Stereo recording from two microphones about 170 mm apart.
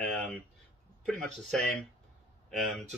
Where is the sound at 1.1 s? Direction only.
5° left (ahead or behind).